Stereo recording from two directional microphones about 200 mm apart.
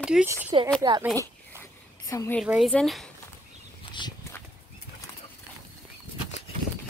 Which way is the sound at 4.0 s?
20° left (ahead or behind).